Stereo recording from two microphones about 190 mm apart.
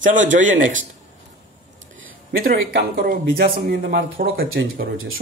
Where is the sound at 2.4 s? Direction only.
50° right (ahead or behind).